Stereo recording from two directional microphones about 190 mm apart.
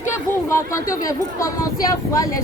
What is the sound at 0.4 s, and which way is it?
Speech, 15° left (ahead or behind).